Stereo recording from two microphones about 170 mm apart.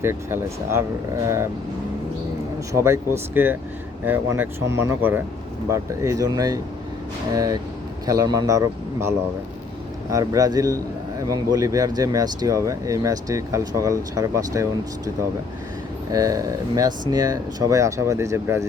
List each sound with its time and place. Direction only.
0.0 s speech: 15° right (ahead or behind)
2.7 s speech: 15° right (ahead or behind)
16.1 s speech: 20° right (ahead or behind)